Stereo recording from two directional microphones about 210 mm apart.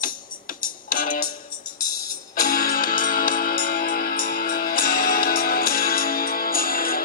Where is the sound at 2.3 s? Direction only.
45° left (ahead or behind).